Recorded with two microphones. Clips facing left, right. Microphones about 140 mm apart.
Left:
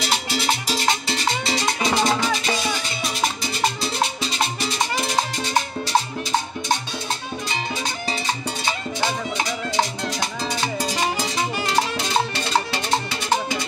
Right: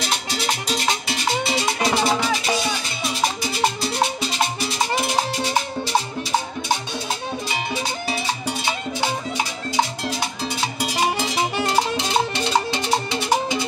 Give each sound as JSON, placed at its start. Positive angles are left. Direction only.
{"t": 1.4, "sound": "music", "side_deg": -5}
{"t": 12.7, "sound": "music", "side_deg": -20}